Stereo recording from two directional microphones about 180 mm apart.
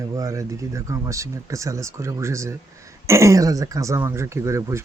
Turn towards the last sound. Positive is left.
turn(degrees=-15)  # may be behind; listen again after turning